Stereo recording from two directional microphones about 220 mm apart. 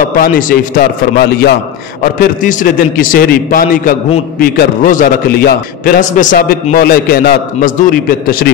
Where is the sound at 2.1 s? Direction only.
35° left (ahead or behind).